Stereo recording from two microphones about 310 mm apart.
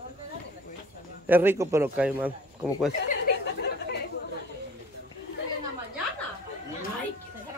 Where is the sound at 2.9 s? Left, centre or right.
Left.